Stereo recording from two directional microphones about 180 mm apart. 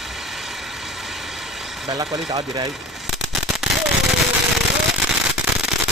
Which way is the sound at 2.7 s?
Centre (ahead or behind).